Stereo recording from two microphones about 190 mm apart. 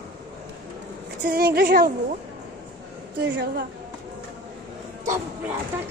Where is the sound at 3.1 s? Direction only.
60° right (ahead or behind).